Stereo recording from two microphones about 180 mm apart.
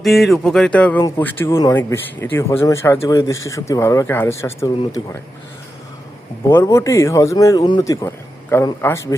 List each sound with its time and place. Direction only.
0.0 s speech: centre (ahead or behind)
4.8 s speech: 30° left (ahead or behind)
6.5 s speech: 15° left (ahead or behind)